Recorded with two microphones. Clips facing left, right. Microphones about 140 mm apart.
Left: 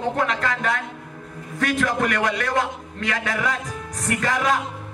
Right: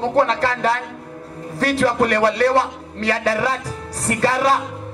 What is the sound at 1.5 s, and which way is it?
Music, 35° right (ahead or behind).